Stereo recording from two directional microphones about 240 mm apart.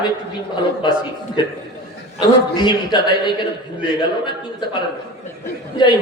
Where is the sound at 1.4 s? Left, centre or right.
Centre.